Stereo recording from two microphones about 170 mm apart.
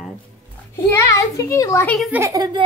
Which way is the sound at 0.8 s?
20° left (ahead or behind).